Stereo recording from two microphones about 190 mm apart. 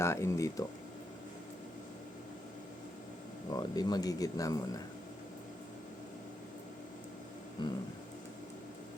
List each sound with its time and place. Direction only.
0.0 s speech: 15° left (ahead or behind)
3.5 s speech: 20° left (ahead or behind)
7.6 s speech: 25° left (ahead or behind)